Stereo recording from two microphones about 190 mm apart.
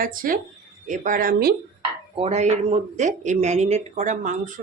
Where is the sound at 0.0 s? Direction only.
45° right (ahead or behind).